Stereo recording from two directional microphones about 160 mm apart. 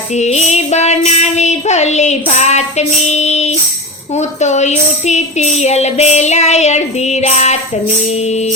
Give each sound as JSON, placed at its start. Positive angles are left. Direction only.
{"t": 0.2, "sound": "speech", "side_deg": 45}